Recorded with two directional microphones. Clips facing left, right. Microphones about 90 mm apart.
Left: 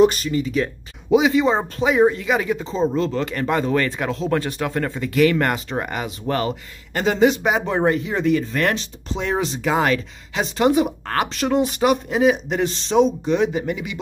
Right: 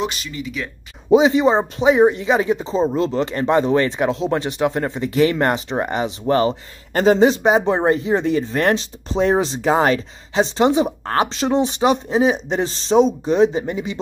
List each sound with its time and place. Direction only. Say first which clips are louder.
0.0 s speech: left 9 dB; 40° left (ahead or behind)
1.1 s speech: right 3 dB; 30° right (ahead or behind)
6.9 s speech: right 3 dB; 40° right (ahead or behind)